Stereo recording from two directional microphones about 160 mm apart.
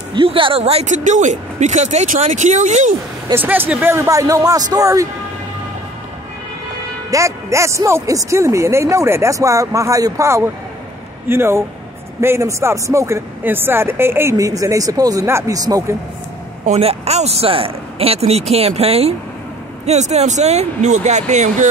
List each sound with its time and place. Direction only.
0.1 s speech: 30° right (ahead or behind); by 2.9 s 50° right (ahead or behind)
3.3 s speech: 15° right (ahead or behind)
7.1 s speech: 20° right (ahead or behind)
16.6 s speech: 40° right (ahead or behind)